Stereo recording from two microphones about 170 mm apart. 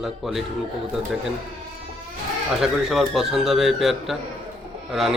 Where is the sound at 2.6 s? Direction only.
Centre (ahead or behind).